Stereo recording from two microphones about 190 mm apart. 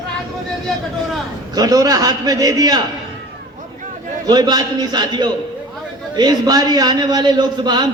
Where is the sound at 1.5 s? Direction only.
20° right (ahead or behind).